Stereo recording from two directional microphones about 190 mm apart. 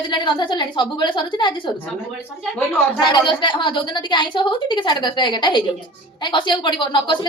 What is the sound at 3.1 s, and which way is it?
A woman's voice, 25° left (ahead or behind).